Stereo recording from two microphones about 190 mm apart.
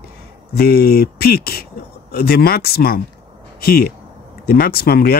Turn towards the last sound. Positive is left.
turn(degrees=55)  # may be behind; listen again after turning